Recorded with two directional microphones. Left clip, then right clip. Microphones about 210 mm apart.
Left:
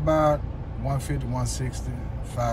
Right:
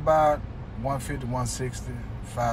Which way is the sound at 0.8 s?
35° right (ahead or behind).